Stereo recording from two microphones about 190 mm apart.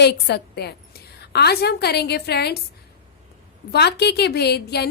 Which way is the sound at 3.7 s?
60° left (ahead or behind).